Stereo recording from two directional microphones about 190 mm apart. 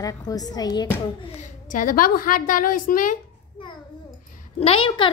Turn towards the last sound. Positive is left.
turn(degrees=30)  # may be behind; listen again after turning